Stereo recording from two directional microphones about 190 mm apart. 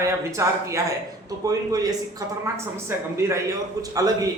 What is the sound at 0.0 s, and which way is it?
A man's voice, 15° right (ahead or behind).